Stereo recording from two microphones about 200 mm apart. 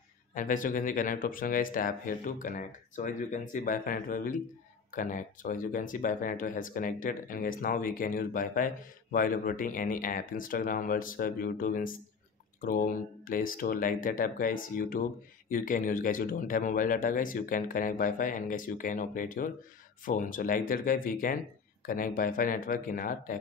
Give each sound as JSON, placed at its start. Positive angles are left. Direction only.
{"t": 0.3, "sound": "speech", "side_deg": 40}